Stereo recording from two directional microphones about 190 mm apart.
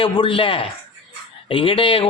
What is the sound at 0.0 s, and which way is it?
A man's voice, 25° left (ahead or behind).